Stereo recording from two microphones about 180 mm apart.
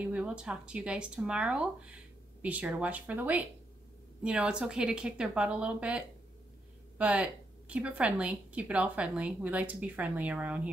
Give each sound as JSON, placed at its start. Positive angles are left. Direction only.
{"t": 0.0, "sound": "a woman's voice", "side_deg": -5}